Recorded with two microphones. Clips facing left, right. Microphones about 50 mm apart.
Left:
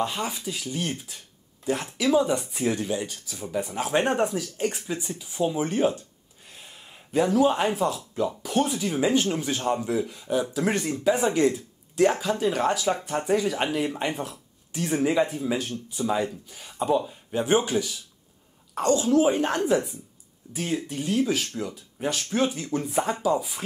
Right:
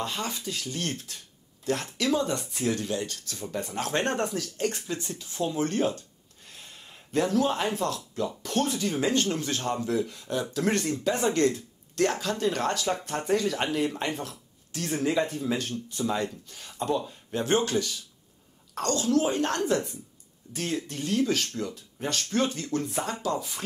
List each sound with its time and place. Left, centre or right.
0.0 s speech: centre